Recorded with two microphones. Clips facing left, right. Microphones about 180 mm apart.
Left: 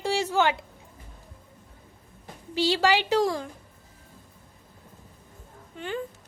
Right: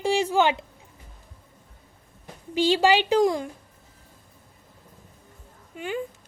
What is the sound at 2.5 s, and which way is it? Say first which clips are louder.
Speech: right 3 dB; 15° right (ahead or behind).